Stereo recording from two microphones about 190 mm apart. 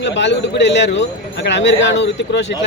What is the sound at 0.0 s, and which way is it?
A man's voice, 65° left (ahead or behind).